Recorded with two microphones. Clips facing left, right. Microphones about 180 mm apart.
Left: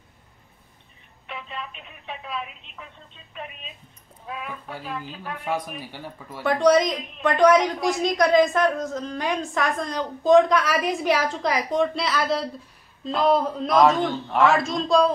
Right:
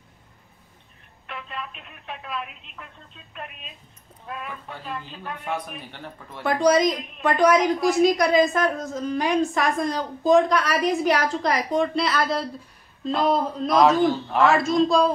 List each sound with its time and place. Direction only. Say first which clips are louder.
1.2 s speech: even; centre (ahead or behind)